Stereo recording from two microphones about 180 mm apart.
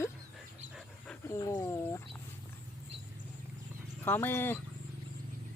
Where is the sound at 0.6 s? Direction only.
Centre (ahead or behind).